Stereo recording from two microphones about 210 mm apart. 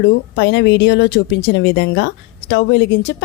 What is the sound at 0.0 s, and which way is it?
A woman's voice, 55° left (ahead or behind).